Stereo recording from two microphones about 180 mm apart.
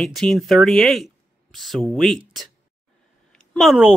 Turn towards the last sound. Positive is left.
turn(degrees=-5)  # may be behind; listen again after turning